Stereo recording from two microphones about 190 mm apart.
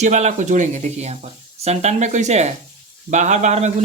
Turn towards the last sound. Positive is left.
turn(degrees=-35)  # may be behind; listen again after turning